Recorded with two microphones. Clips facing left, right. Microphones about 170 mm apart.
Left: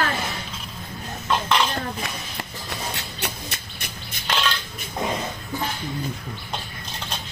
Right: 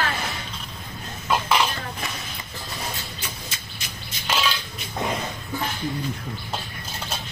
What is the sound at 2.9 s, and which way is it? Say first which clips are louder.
Music: left 3 dB; 65° left (ahead or behind).